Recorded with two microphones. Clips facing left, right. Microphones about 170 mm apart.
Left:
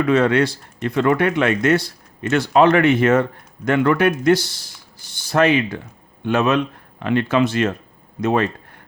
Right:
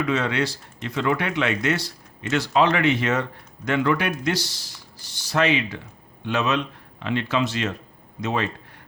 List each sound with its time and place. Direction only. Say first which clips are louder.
0.0 s speech: left 7 dB; 55° left (ahead or behind)